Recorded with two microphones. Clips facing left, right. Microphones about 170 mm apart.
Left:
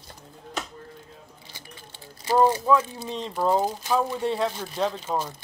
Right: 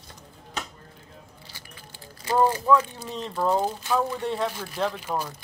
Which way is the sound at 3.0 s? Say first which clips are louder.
Left 2 dB; 30° left (ahead or behind).